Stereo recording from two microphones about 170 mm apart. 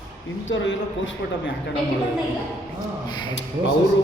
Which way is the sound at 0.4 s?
90° left.